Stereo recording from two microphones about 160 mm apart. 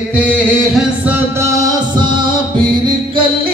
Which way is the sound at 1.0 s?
20° right (ahead or behind).